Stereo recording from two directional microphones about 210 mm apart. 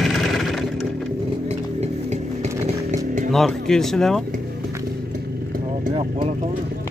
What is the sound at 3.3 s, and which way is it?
Speech, centre (ahead or behind).